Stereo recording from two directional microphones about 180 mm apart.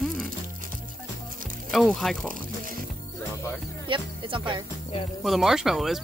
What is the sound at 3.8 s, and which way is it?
Music, 30° right (ahead or behind).